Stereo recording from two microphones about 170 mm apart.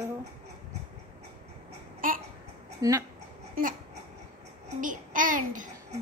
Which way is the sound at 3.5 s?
55° right (ahead or behind).